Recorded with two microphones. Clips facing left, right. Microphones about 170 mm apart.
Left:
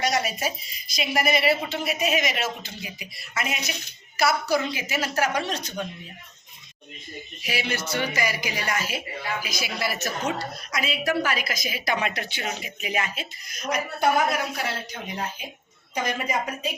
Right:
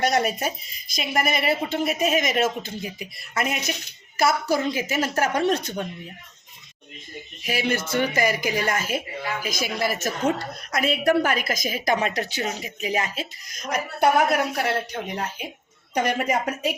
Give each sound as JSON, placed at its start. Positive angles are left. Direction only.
{"t": 0.0, "sound": "a woman's voice", "side_deg": -55}
{"t": 7.4, "sound": "a woman's voice", "side_deg": -45}
{"t": 14.0, "sound": "a woman's voice", "side_deg": -60}